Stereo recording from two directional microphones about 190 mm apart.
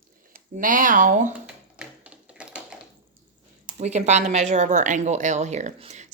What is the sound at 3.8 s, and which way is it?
A woman's voice, 35° right (ahead or behind).